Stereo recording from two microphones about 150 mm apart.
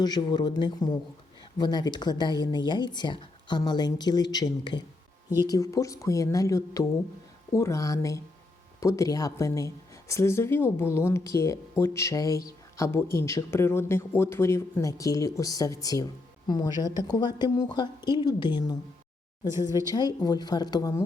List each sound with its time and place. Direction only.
0.0 s a woman's voice: 30° left (ahead or behind)